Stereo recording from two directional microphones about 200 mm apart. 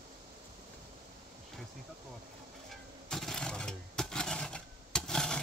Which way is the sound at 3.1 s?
Centre (ahead or behind).